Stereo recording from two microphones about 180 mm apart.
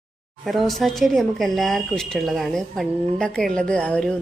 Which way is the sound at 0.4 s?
Centre (ahead or behind).